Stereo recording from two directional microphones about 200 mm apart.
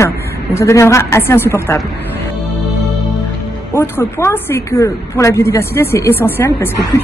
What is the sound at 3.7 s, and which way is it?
A woman's voice, 10° left (ahead or behind).